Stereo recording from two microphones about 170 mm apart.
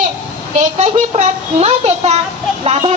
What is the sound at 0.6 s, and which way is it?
A woman's voice, 40° right (ahead or behind).